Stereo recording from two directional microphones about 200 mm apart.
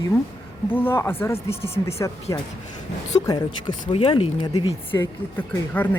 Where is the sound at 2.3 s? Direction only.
15° left (ahead or behind).